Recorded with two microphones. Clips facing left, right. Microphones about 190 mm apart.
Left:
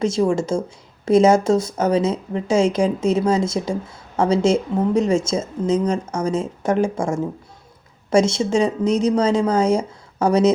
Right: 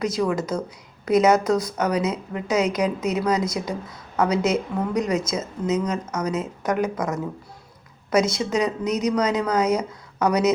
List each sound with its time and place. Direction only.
0.0 s speech: 25° left (ahead or behind)